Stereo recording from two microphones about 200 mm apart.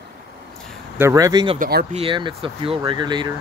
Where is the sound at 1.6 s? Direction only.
50° right (ahead or behind).